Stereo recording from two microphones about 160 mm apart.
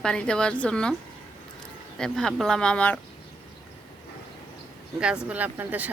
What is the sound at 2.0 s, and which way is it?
Speech, 5° left (ahead or behind).